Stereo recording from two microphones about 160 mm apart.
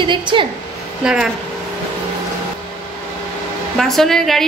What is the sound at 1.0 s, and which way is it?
Speech, 5° right (ahead or behind).